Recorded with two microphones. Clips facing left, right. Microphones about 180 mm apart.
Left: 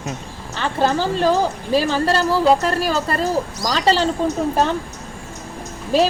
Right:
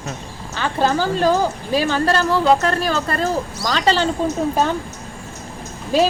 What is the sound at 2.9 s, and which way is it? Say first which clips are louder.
Speech: even; 35° left (ahead or behind).